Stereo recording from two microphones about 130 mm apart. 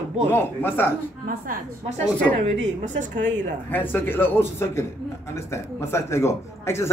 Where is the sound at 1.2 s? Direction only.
90° right.